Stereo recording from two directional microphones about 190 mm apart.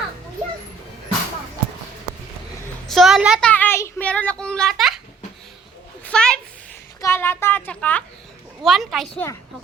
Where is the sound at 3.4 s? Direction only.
10° left (ahead or behind).